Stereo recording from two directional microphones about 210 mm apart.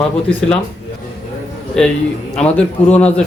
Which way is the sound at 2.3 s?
5° left (ahead or behind).